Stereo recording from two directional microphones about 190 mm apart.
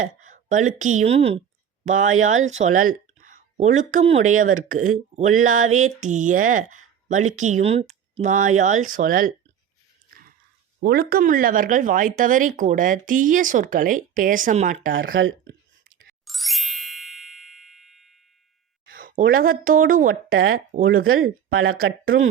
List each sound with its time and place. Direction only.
0.0 s speech: 40° right (ahead or behind)
4.3 s a sound: 40° right (ahead or behind)
10.8 s speech: 55° right (ahead or behind)
14.9 s speech: 90° right
16.2 s ding: centre (ahead or behind)
18.9 s a sound: 50° right (ahead or behind)
19.4 s speech: 45° right (ahead or behind)
20.3 s speech: 90° right